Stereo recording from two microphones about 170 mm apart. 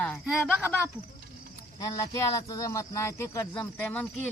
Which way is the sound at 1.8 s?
20° left (ahead or behind).